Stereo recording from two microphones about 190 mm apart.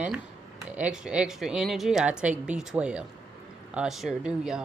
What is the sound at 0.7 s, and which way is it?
Speech, 5° right (ahead or behind).